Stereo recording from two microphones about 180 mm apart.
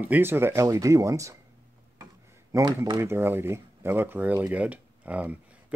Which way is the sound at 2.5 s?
20° right (ahead or behind).